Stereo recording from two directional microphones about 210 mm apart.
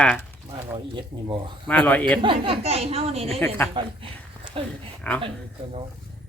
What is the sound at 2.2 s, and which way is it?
Speech, 25° right (ahead or behind).